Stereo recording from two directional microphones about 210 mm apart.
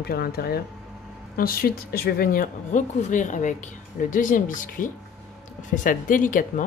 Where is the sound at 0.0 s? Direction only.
45° left (ahead or behind).